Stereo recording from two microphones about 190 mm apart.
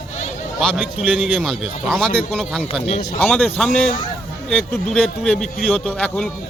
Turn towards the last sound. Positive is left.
turn(degrees=5)  # may be behind; listen again after turning